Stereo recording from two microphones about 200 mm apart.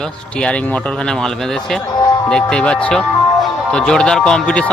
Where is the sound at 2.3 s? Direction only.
5° left (ahead or behind).